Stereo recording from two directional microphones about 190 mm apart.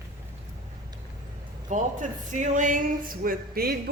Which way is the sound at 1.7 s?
40° right (ahead or behind).